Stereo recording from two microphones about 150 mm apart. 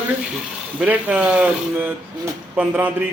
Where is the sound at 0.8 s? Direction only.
10° right (ahead or behind).